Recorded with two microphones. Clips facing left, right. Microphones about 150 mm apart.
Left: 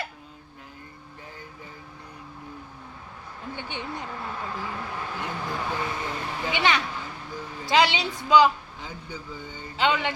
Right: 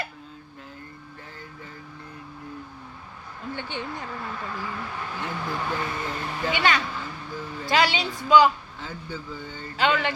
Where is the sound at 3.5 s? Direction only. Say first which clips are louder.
Right 1 dB; 15° left (ahead or behind).